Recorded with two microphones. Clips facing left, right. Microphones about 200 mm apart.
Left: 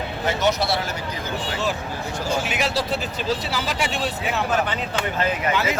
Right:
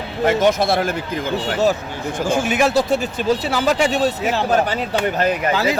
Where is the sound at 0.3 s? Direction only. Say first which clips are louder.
Right 6 dB; 50° right (ahead or behind).